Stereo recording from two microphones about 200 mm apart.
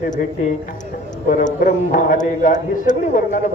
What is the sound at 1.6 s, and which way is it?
A man's voice, 40° left (ahead or behind).